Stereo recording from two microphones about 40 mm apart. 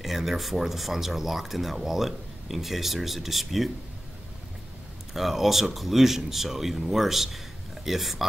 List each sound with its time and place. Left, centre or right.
0.0 s speech: centre
5.1 s speech: centre